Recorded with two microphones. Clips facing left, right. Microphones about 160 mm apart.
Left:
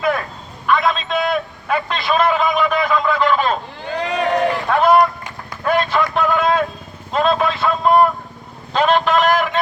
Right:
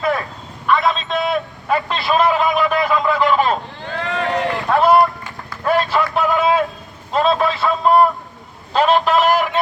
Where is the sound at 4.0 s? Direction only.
20° left (ahead or behind).